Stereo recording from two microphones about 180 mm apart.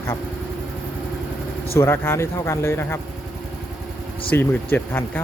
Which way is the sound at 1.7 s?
15° left (ahead or behind).